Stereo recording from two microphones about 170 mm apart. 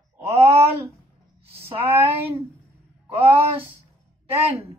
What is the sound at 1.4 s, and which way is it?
Speech, 35° right (ahead or behind).